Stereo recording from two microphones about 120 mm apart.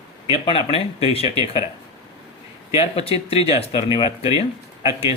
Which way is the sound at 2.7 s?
55° left (ahead or behind).